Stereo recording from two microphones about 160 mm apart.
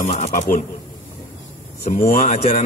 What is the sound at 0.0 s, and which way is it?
Mantra, 45° left (ahead or behind).